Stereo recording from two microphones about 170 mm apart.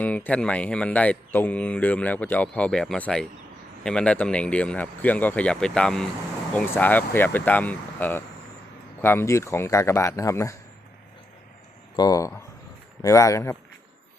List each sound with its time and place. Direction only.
0.0 s speech: 10° left (ahead or behind)
11.9 s speech: 20° left (ahead or behind)